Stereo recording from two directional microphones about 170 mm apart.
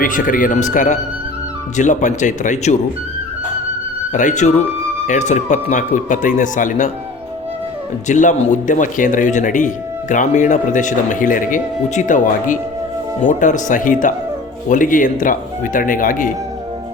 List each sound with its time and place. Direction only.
0.0 s speech: 50° left (ahead or behind)
4.1 s speech: 45° left (ahead or behind)
8.0 s speech: 45° left (ahead or behind)